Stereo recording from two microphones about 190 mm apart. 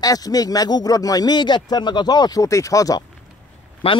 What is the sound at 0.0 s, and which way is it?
Speech, 20° left (ahead or behind).